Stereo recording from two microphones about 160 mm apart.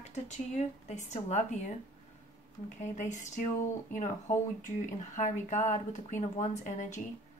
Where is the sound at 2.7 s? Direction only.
50° left (ahead or behind).